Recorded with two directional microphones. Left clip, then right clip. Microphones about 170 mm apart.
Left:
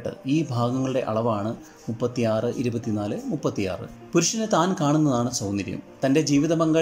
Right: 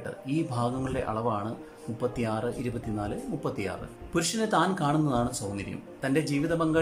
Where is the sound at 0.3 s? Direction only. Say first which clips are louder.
Left 5 dB; 15° left (ahead or behind).